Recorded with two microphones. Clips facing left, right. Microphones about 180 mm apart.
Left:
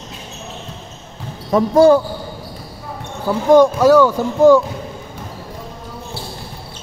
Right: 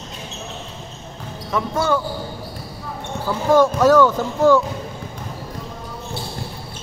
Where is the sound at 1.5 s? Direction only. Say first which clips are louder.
Left 10 dB; 35° left (ahead or behind).